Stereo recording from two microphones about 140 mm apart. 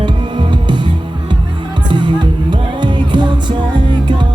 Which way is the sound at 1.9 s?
35° right (ahead or behind).